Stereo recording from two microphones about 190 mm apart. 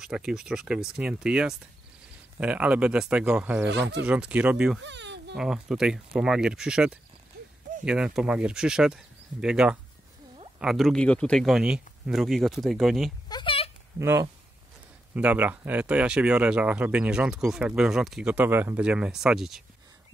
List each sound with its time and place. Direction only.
0.0 s speech: 5° right (ahead or behind)
3.6 s speech: 65° right (ahead or behind)
4.0 s speech: 5° right (ahead or behind)
4.8 s a sound: 65° right (ahead or behind)
5.3 s speech: 5° right (ahead or behind)
7.3 s a sound: 50° right (ahead or behind)
7.8 s speech: 5° right (ahead or behind)
13.3 s a sound: 25° left (ahead or behind)
13.9 s speech: 15° right (ahead or behind)